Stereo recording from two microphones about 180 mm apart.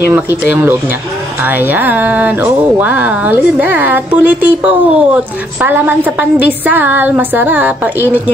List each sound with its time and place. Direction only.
0.5 s a woman's voice: 10° right (ahead or behind)